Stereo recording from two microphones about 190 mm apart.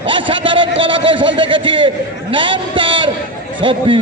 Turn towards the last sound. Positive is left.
turn(degrees=-25)  # may be behind; listen again after turning